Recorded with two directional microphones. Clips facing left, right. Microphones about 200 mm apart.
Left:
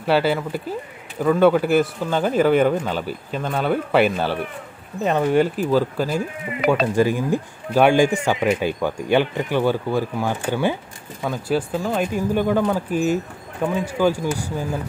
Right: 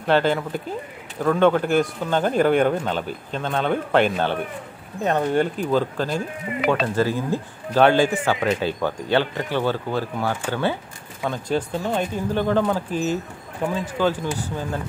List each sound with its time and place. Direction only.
0.0 s speech: 5° left (ahead or behind)
6.6 s speech: 40° left (ahead or behind)
7.0 s speech: 15° left (ahead or behind)